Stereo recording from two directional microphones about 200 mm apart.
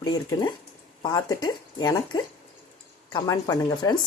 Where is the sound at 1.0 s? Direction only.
20° left (ahead or behind).